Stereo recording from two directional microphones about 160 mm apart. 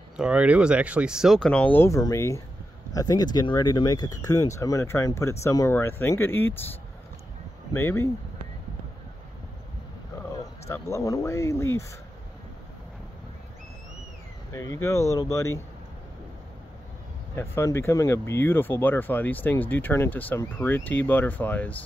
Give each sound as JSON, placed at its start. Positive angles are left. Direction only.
{"t": 0.2, "sound": "speech", "side_deg": -10}
{"t": 7.7, "sound": "speech", "side_deg": 15}
{"t": 10.7, "sound": "speech", "side_deg": 15}
{"t": 14.5, "sound": "speech", "side_deg": 20}
{"t": 17.4, "sound": "speech", "side_deg": 15}